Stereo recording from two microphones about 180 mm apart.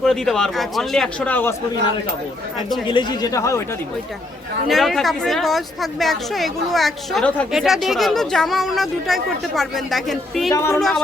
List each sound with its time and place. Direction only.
0.0 s speech: centre (ahead or behind)
2.8 s speech: 25° left (ahead or behind)
4.7 s speech: centre (ahead or behind)
10.5 s speech: 15° left (ahead or behind)
10.8 s speech: centre (ahead or behind)